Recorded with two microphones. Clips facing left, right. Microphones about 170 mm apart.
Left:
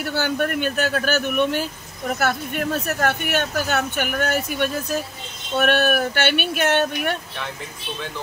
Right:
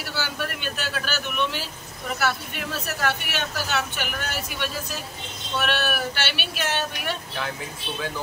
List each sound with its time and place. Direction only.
0.0 s speech: 50° left (ahead or behind)